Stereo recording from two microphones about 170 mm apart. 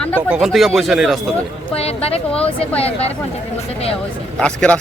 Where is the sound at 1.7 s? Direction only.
35° left (ahead or behind).